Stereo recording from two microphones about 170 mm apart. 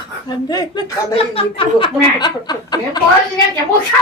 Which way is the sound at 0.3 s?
25° left (ahead or behind).